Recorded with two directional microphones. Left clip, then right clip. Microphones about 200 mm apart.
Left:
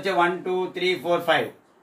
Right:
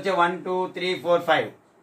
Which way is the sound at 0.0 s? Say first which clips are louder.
Even; 10° right (ahead or behind).